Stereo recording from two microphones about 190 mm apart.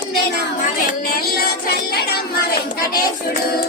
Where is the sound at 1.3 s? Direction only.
55° left (ahead or behind).